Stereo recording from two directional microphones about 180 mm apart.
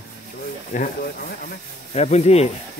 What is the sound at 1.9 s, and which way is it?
Speech, 40° left (ahead or behind).